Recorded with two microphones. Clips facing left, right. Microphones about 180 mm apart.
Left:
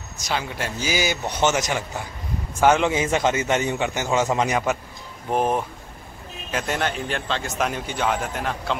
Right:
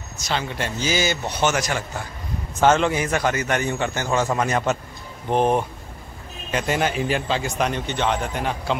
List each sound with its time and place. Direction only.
0.2 s a man's voice: 10° left (ahead or behind)